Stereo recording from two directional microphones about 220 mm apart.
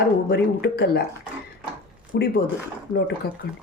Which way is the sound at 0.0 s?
50° left (ahead or behind).